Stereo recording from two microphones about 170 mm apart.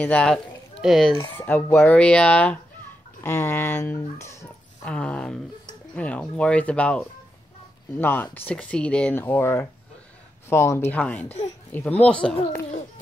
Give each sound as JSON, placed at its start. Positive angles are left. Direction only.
{"t": 0.0, "sound": "speech", "side_deg": 5}
{"t": 1.3, "sound": "speech", "side_deg": 10}
{"t": 4.9, "sound": "speech", "side_deg": 5}